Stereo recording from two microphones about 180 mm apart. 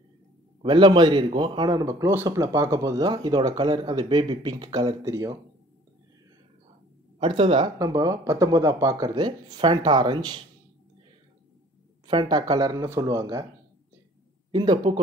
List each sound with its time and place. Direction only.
0.6 s a man's voice: 25° right (ahead or behind)
7.2 s a man's voice: 30° right (ahead or behind)
12.1 s a man's voice: 25° right (ahead or behind)
14.5 s a man's voice: 20° right (ahead or behind)